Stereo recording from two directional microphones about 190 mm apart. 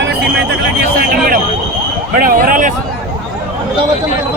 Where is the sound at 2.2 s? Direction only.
50° right (ahead or behind).